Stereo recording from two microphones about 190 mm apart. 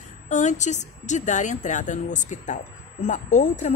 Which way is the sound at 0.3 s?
40° left (ahead or behind).